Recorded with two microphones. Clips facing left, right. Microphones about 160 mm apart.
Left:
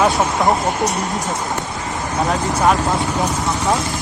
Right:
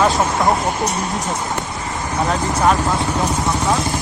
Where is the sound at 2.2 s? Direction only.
Centre (ahead or behind).